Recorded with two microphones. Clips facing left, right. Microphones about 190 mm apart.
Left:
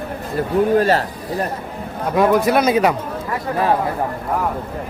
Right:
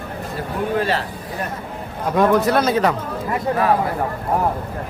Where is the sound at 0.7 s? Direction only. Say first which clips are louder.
Left 4 dB; 45° left (ahead or behind).